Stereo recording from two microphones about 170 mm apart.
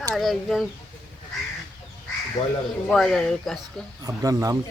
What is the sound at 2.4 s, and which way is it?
Speech, 25° left (ahead or behind).